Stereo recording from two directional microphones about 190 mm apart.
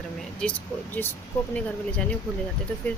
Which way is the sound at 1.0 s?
10° left (ahead or behind).